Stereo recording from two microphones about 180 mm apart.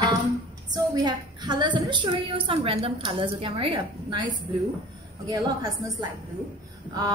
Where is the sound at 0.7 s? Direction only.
20° right (ahead or behind).